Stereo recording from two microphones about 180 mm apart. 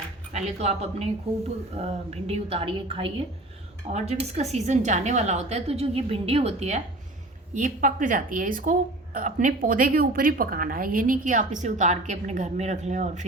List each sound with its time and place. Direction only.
0.3 s a woman's voice: 35° right (ahead or behind)